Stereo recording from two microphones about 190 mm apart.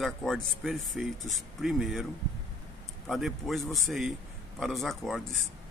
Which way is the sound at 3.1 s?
Centre (ahead or behind).